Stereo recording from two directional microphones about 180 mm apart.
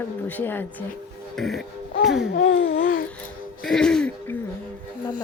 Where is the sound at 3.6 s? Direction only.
5° left (ahead or behind).